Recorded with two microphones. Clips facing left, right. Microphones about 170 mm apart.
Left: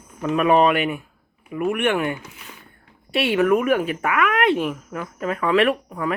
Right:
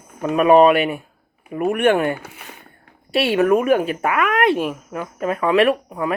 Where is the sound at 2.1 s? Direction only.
60° right (ahead or behind).